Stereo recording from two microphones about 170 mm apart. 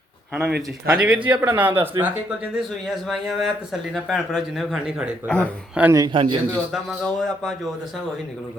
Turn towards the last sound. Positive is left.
turn(degrees=0)  # may be behind; listen again after turning